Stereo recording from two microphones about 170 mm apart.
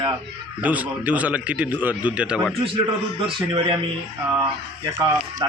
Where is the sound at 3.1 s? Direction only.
30° right (ahead or behind).